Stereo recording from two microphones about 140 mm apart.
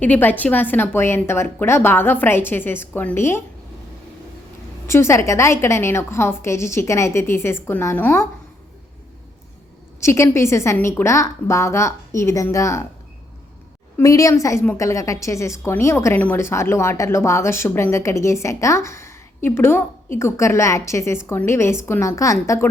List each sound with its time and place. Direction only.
0.0 s speech: 10° left (ahead or behind)
4.9 s a woman's voice: 20° left (ahead or behind)
10.0 s a woman's voice: 20° left (ahead or behind)
14.0 s a woman's voice: 25° left (ahead or behind)